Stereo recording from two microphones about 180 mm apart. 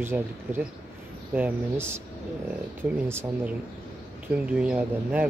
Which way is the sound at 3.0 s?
15° right (ahead or behind).